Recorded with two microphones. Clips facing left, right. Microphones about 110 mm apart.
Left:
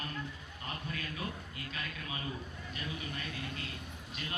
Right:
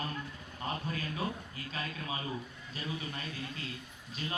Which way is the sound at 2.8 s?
30° right (ahead or behind).